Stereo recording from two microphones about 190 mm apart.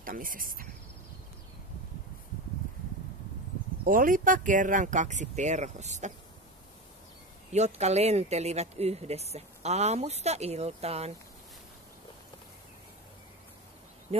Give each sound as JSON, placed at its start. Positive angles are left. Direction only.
{"t": 0.0, "sound": "speech", "side_deg": -45}
{"t": 3.8, "sound": "speech", "side_deg": -45}
{"t": 7.5, "sound": "speech", "side_deg": -35}